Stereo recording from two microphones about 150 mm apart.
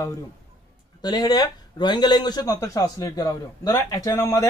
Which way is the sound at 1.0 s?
25° left (ahead or behind).